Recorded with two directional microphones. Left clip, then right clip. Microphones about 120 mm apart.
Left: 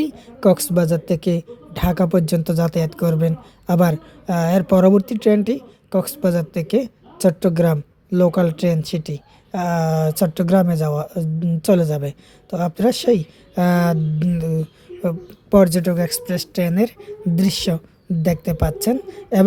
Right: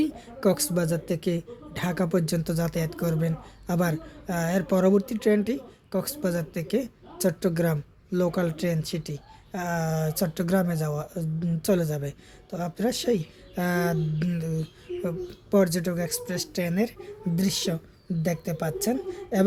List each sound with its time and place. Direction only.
0.0 s a woman's voice: 40° left (ahead or behind)